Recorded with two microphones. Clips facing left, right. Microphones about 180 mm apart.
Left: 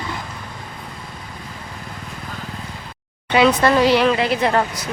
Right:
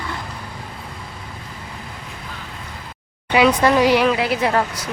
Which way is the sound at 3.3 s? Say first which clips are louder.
Even; 10° right (ahead or behind).